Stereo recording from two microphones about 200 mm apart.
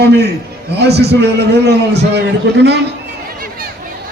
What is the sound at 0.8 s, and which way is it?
A man's voice, 55° right (ahead or behind).